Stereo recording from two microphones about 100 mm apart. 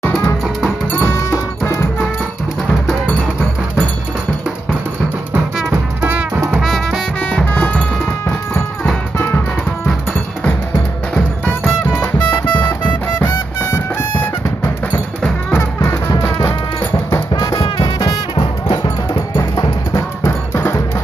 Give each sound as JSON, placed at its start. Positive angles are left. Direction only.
{"t": 0.1, "sound": "music", "side_deg": 5}
{"t": 0.9, "sound": "music", "side_deg": 25}
{"t": 3.1, "sound": "music", "side_deg": 15}
{"t": 6.6, "sound": "music", "side_deg": 0}
{"t": 7.2, "sound": "music", "side_deg": 15}
{"t": 11.9, "sound": "music", "side_deg": 20}
{"t": 14.9, "sound": "music", "side_deg": 15}
{"t": 17.1, "sound": "music", "side_deg": 40}
{"t": 17.6, "sound": "music", "side_deg": 50}
{"t": 19.3, "sound": "music", "side_deg": 40}
{"t": 20.0, "sound": "music", "side_deg": 25}